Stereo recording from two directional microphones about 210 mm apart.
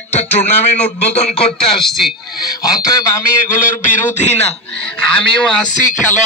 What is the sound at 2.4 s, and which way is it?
A man's voice, 15° left (ahead or behind).